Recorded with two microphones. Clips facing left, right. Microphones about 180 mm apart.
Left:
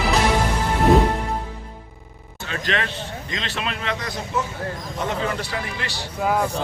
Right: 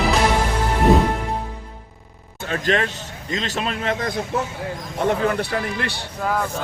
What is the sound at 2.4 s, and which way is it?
A man's voice, 45° right (ahead or behind).